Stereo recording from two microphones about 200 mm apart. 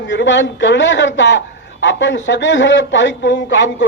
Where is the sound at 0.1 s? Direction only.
65° left (ahead or behind).